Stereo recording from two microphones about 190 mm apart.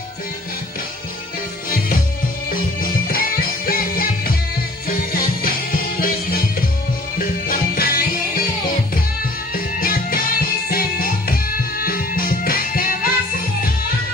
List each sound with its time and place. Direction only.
2.5 s music: 50° left (ahead or behind)
9.5 s music: 50° left (ahead or behind)